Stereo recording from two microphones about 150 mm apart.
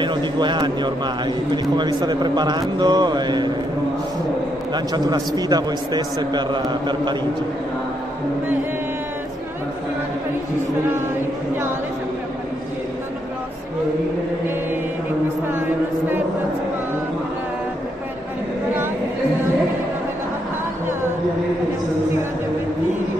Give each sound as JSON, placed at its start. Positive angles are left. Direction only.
{"t": 0.0, "sound": "a man's voice", "side_deg": -30}
{"t": 4.7, "sound": "a man's voice", "side_deg": -25}